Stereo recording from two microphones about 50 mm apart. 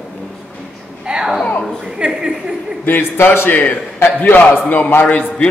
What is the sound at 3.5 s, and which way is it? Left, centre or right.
A man's voice, left.